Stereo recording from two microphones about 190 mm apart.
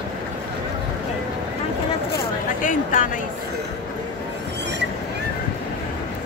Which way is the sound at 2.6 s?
45° left (ahead or behind).